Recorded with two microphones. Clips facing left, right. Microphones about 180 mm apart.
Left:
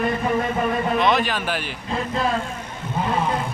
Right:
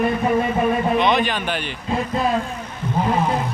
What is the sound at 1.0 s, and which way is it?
Speech, centre (ahead or behind).